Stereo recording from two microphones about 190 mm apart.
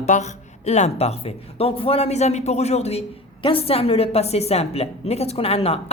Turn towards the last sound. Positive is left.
turn(degrees=30)  # may be behind; listen again after turning